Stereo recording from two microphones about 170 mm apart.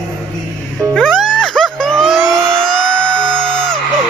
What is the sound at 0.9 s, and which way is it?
Music, 5° left (ahead or behind).